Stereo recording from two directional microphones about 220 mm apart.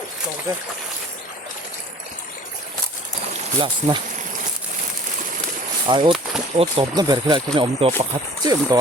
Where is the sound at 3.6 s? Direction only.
20° right (ahead or behind).